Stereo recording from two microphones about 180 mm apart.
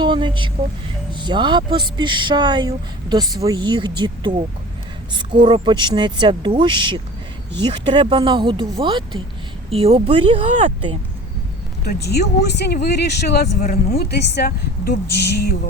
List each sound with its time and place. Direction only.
0.0 s speech: 25° right (ahead or behind)
11.9 s a woman's voice: 65° left (ahead or behind)
13.6 s speech: 50° left (ahead or behind)
14.0 s a woman's voice: 65° left (ahead or behind)